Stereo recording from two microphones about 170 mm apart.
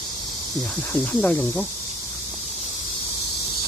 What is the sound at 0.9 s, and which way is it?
Speech, 10° left (ahead or behind).